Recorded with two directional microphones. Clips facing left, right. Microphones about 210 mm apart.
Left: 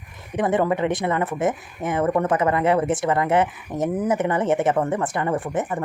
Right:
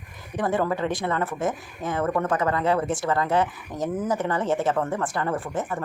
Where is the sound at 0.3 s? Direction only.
20° left (ahead or behind).